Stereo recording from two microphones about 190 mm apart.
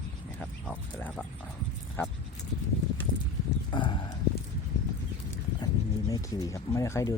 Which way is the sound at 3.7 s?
25° left (ahead or behind).